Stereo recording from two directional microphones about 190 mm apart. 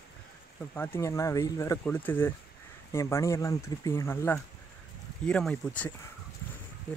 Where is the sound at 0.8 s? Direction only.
15° left (ahead or behind).